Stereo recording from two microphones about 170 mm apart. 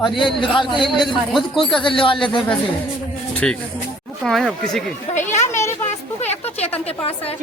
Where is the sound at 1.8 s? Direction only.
30° left (ahead or behind).